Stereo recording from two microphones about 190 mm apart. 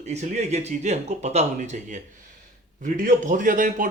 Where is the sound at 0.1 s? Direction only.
35° right (ahead or behind).